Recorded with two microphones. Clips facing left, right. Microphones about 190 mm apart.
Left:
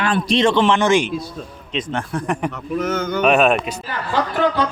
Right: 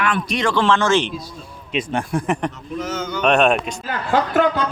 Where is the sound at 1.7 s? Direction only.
10° right (ahead or behind).